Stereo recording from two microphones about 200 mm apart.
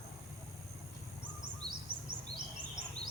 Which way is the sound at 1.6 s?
5° left (ahead or behind).